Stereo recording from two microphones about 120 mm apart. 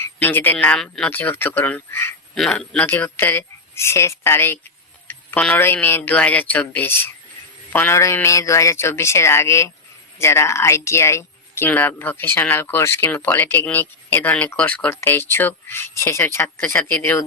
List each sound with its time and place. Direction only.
0.0 s speech: 15° left (ahead or behind)
2.3 s speech: 5° left (ahead or behind)